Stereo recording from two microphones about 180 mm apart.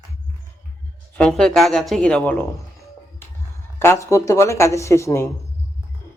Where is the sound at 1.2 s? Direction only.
5° left (ahead or behind).